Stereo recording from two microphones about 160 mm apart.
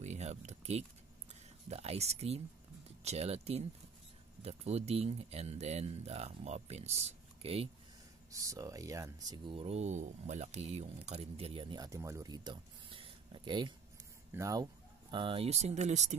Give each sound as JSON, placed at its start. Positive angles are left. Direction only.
{"t": 0.0, "sound": "speech", "side_deg": -45}
{"t": 8.3, "sound": "speech", "side_deg": -20}
{"t": 9.6, "sound": "speech", "side_deg": -40}